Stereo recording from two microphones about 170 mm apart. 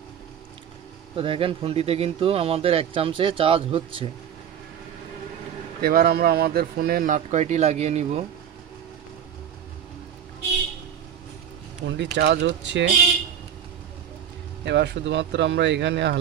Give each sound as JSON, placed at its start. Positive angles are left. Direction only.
{"t": 1.1, "sound": "speech", "side_deg": -30}
{"t": 5.8, "sound": "speech", "side_deg": -60}
{"t": 12.0, "sound": "speech", "side_deg": -85}
{"t": 14.6, "sound": "speech", "side_deg": -90}